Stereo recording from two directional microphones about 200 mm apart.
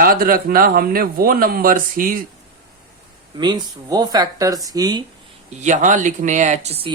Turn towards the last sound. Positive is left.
turn(degrees=-30)  # may be behind; listen again after turning